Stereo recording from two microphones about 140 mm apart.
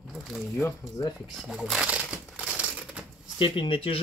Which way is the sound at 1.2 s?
Centre (ahead or behind).